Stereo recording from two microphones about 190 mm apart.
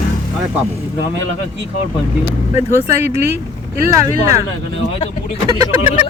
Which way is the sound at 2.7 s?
15° right (ahead or behind).